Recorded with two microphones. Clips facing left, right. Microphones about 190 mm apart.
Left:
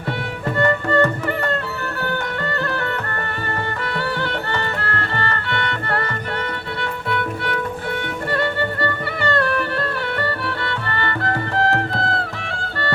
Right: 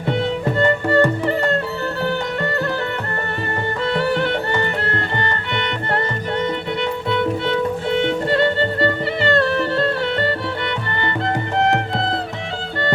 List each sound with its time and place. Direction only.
0.6 s music: 25° right (ahead or behind)
3.8 s music: 25° right (ahead or behind)